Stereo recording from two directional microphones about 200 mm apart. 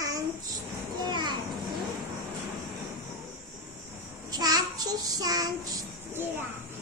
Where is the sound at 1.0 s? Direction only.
20° right (ahead or behind).